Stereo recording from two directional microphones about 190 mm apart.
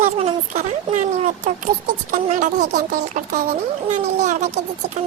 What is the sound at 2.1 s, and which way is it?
Speech, 40° right (ahead or behind).